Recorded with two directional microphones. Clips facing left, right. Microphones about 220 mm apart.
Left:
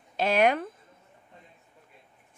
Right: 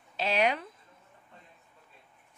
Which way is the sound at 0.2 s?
50° left (ahead or behind).